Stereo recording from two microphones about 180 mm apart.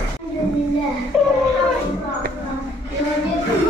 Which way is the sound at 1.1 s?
Centre (ahead or behind).